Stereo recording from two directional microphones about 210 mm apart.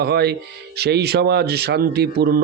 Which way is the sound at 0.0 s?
50° right (ahead or behind).